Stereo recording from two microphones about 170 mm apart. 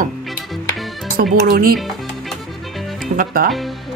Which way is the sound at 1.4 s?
60° right (ahead or behind).